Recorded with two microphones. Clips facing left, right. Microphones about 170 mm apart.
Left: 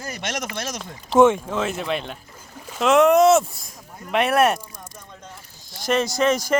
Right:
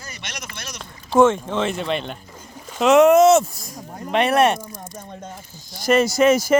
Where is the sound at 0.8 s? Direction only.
15° left (ahead or behind).